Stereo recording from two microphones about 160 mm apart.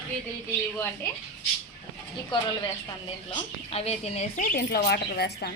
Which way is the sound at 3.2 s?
40° left (ahead or behind).